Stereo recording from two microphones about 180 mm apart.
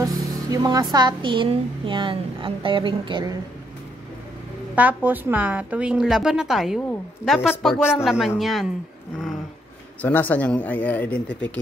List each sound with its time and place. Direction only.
0.0 s music: 20° right (ahead or behind)
0.9 s a child's voice: 25° right (ahead or behind)
4.7 s a woman's voice: 10° right (ahead or behind)
6.9 s a woman's voice: 10° left (ahead or behind)
10.0 s speech: 10° left (ahead or behind)